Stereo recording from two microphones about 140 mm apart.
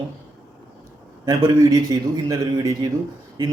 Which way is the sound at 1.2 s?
30° right (ahead or behind).